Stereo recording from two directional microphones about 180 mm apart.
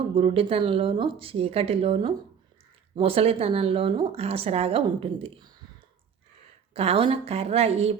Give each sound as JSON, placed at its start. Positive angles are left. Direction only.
{"t": 0.1, "sound": "speech", "side_deg": -30}
{"t": 6.7, "sound": "speech", "side_deg": -30}